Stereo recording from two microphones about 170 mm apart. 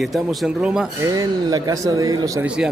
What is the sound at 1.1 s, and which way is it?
Speech, 20° right (ahead or behind).